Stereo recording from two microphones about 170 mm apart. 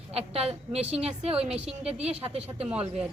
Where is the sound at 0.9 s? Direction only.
35° right (ahead or behind).